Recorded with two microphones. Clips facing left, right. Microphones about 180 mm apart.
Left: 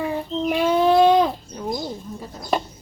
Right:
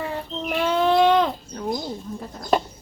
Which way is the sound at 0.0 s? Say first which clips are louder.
Left 5 dB; 10° left (ahead or behind).